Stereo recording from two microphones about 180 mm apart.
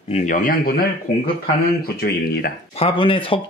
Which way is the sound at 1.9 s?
60° left (ahead or behind).